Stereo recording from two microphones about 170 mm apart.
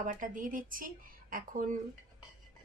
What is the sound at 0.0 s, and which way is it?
A woman's voice, 50° right (ahead or behind).